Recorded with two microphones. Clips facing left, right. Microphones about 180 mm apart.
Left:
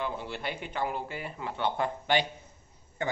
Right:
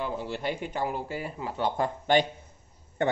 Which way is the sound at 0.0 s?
40° right (ahead or behind).